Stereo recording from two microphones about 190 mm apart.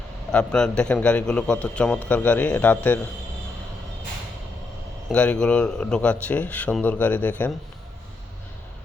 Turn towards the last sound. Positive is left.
turn(degrees=10)  # may be behind; listen again after turning